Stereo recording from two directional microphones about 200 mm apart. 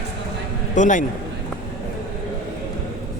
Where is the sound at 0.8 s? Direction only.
40° left (ahead or behind).